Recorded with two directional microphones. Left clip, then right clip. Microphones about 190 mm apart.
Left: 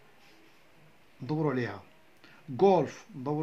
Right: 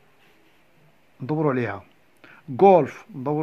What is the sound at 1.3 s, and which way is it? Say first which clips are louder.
Speech: right 8 dB; 50° right (ahead or behind).